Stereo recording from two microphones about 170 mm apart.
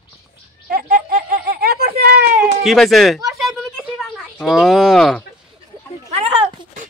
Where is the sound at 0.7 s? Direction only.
60° right (ahead or behind).